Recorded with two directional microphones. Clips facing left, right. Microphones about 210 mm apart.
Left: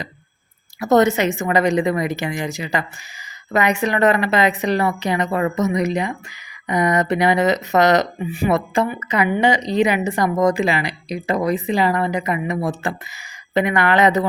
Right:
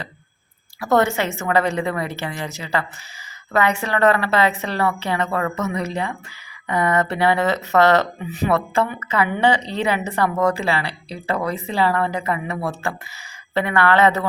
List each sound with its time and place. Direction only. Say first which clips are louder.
0.8 s speech: left 4 dB; 20° left (ahead or behind)